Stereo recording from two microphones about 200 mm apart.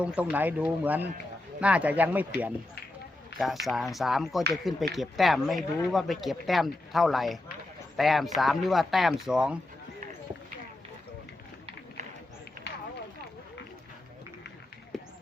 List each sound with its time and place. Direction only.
0.0 s speech: 5° right (ahead or behind)
3.3 s speech: centre (ahead or behind)
14.9 s run: centre (ahead or behind)